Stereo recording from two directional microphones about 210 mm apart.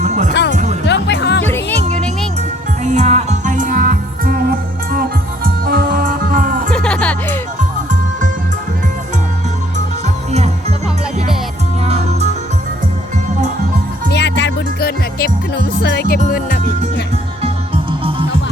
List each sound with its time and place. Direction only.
0.0 s music: 35° right (ahead or behind)
0.9 s music: 55° left (ahead or behind)
2.8 s music: 35° right (ahead or behind)
6.7 s music: 5° left (ahead or behind)
11.9 s music: 30° right (ahead or behind)
14.1 s music: 55° left (ahead or behind)